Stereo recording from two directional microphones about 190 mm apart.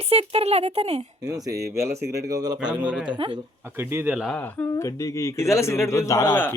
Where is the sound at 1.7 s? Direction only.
15° right (ahead or behind).